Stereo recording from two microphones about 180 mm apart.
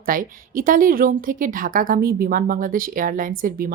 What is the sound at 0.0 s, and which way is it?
A woman's voice, 50° right (ahead or behind).